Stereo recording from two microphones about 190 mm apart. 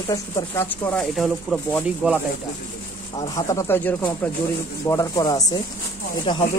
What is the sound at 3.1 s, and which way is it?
Speech, 20° left (ahead or behind).